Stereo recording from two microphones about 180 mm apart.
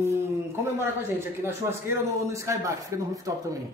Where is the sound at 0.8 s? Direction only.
15° right (ahead or behind).